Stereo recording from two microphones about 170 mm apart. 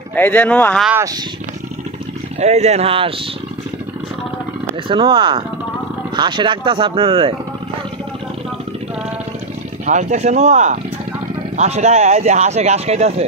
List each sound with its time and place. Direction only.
0.1 s speech: 10° left (ahead or behind)
2.4 s speech: 40° right (ahead or behind)
4.8 s speech: 30° right (ahead or behind)
9.8 s speech: 45° right (ahead or behind)